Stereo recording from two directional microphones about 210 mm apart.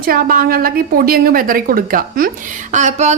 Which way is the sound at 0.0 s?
45° right (ahead or behind).